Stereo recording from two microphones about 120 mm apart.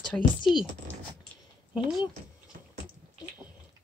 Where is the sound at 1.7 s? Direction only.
Centre (ahead or behind).